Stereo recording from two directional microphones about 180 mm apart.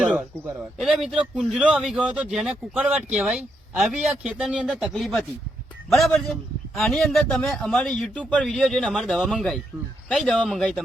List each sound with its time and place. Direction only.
0.0 s a man's voice: 5° right (ahead or behind)